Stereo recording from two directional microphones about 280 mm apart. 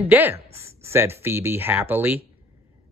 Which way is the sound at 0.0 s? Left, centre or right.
Centre.